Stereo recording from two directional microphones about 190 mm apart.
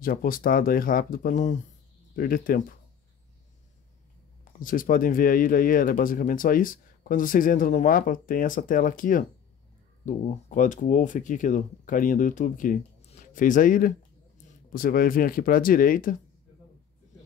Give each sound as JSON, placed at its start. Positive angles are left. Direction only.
{"t": 0.0, "sound": "speech", "side_deg": 50}
{"t": 4.5, "sound": "speech", "side_deg": 45}